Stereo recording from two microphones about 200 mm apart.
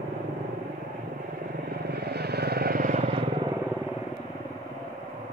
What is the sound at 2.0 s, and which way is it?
Vehicle, 55° right (ahead or behind).